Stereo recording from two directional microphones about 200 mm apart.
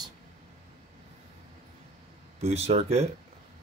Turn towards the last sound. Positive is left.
turn(degrees=-30)  # may be behind; listen again after turning